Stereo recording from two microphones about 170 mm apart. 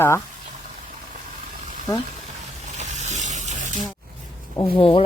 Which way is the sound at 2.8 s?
45° right (ahead or behind).